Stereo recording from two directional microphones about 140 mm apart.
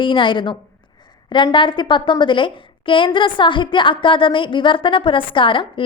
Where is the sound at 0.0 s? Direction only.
35° left (ahead or behind).